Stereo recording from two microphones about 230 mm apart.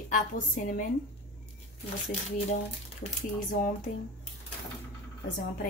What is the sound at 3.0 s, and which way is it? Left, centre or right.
Speech, left.